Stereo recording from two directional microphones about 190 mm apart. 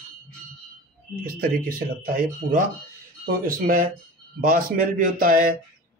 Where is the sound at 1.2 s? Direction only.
50° right (ahead or behind).